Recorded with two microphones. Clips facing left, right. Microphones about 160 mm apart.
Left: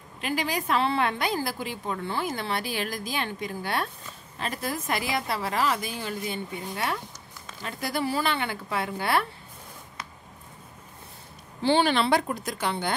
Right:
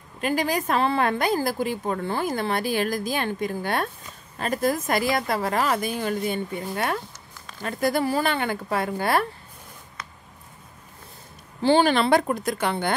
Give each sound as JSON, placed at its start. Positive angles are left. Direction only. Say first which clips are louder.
{"t": 0.2, "sound": "a woman's voice", "louder": "right 5 dB", "side_deg": -45}
{"t": 11.6, "sound": "a woman's voice", "louder": "right 4 dB", "side_deg": -45}